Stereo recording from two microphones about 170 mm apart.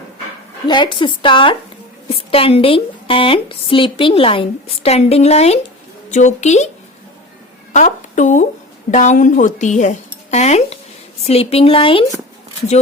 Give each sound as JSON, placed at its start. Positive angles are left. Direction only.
{"t": 0.7, "sound": "a woman's voice", "side_deg": 30}
{"t": 7.7, "sound": "a woman's voice", "side_deg": 45}